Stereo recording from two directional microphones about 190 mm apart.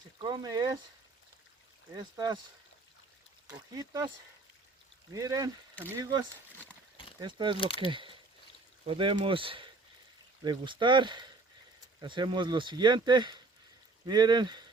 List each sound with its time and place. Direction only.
0.2 s speech: 20° right (ahead or behind)
2.0 s speech: 20° right (ahead or behind)
3.8 s speech: 20° right (ahead or behind)
5.1 s speech: 20° right (ahead or behind)
7.5 s speech: 30° left (ahead or behind)
7.9 s speech: 25° right (ahead or behind)